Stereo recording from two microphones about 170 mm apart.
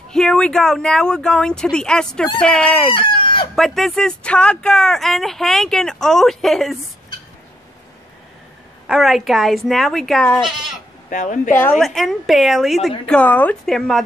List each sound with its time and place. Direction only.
0.1 s speech: 5° left (ahead or behind)
2.9 s chicken: 30° left (ahead or behind)
3.5 s speech: centre (ahead or behind)
8.8 s speech: centre (ahead or behind)
11.1 s speech: 45° left (ahead or behind)
11.8 s speech: centre (ahead or behind)